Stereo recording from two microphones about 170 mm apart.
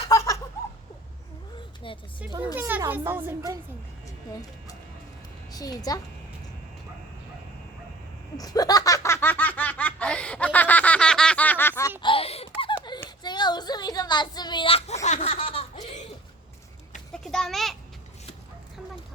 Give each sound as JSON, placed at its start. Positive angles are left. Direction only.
{"t": 0.0, "sound": "laughter", "side_deg": 20}
{"t": 2.6, "sound": "speech", "side_deg": -10}
{"t": 5.5, "sound": "a child's voice", "side_deg": 20}
{"t": 8.4, "sound": "a sound", "side_deg": 20}
{"t": 13.1, "sound": "a sound", "side_deg": 25}
{"t": 15.0, "sound": "laughter", "side_deg": 40}
{"t": 17.2, "sound": "a child's voice", "side_deg": 0}